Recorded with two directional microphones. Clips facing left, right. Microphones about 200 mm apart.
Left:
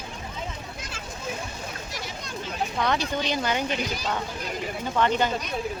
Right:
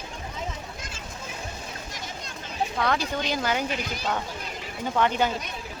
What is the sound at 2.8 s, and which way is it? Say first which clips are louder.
Speech: left 1 dB; 5° right (ahead or behind).